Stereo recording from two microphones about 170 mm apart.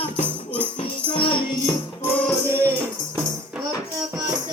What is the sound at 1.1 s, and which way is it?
Music, 30° left (ahead or behind).